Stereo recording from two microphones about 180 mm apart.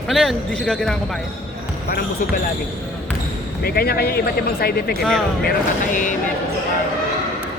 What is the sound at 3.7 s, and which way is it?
Speech, 60° left (ahead or behind).